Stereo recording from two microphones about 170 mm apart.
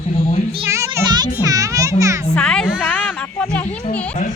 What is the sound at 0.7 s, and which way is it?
Music, 15° right (ahead or behind).